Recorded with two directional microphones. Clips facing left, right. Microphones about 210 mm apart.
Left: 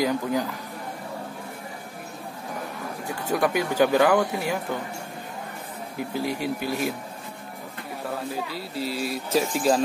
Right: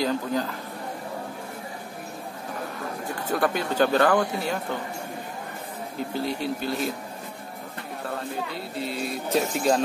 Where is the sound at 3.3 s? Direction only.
10° left (ahead or behind).